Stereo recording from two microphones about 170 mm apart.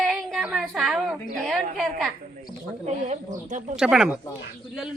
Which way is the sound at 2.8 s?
40° right (ahead or behind).